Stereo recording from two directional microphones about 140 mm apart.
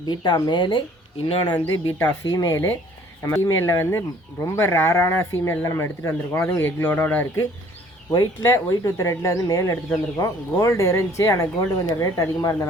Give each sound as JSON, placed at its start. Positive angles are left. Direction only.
{"t": 0.1, "sound": "speech", "side_deg": 30}